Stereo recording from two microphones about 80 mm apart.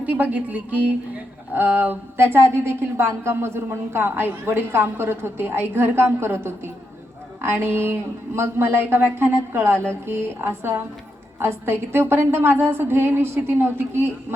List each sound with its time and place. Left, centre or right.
0.0 s a woman's voice: centre